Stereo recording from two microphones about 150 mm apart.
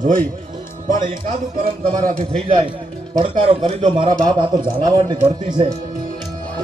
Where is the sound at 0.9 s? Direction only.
65° right (ahead or behind).